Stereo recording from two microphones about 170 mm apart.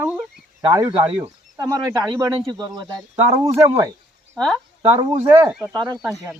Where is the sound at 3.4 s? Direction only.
15° right (ahead or behind).